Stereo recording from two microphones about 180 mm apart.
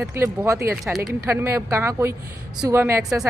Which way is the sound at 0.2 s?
15° right (ahead or behind).